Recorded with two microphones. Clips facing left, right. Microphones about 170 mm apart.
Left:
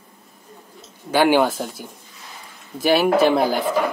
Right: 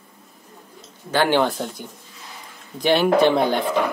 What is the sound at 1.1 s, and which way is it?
Speech, 10° left (ahead or behind).